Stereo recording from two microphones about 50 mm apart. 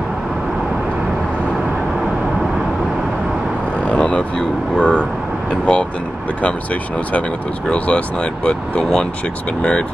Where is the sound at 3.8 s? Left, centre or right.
Left.